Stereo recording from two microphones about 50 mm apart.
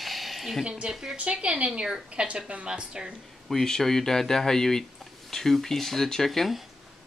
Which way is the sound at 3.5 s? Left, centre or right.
Centre.